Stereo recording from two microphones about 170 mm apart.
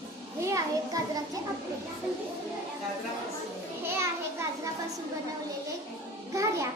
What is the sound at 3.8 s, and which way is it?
Speech, 15° right (ahead or behind).